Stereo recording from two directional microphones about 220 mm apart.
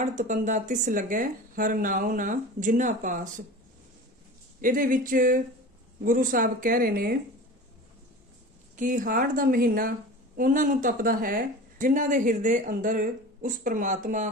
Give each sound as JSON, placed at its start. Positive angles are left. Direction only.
{"t": 0.0, "sound": "speech", "side_deg": -35}
{"t": 4.6, "sound": "speech", "side_deg": -40}
{"t": 8.7, "sound": "speech", "side_deg": -35}